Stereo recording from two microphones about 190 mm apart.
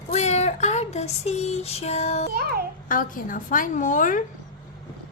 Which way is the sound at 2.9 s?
45° left (ahead or behind).